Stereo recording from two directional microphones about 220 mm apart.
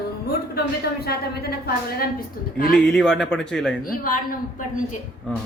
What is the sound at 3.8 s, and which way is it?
Speech, 40° left (ahead or behind).